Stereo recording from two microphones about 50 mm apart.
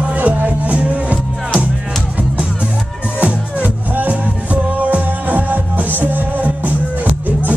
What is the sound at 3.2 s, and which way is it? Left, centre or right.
Music, right.